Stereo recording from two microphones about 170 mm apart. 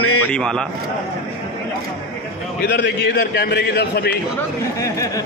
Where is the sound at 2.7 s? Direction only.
90° left.